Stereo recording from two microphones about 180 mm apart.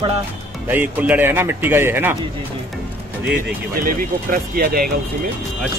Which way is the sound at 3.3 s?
60° right (ahead or behind).